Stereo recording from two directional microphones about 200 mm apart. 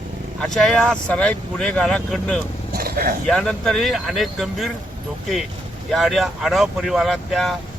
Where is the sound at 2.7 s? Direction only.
50° right (ahead or behind).